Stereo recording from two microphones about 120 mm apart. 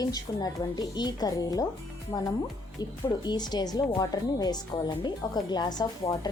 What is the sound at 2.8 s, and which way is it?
Speech, 35° left (ahead or behind).